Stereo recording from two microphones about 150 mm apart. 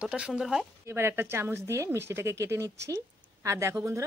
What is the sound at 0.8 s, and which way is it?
Speech, 15° right (ahead or behind).